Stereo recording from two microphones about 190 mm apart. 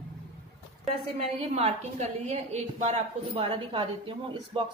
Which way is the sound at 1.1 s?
35° right (ahead or behind).